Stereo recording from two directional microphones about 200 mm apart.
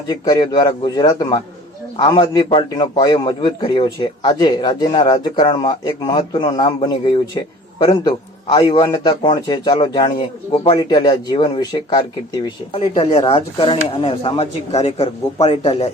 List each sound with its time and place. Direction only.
0.1 s a man's voice: 20° left (ahead or behind)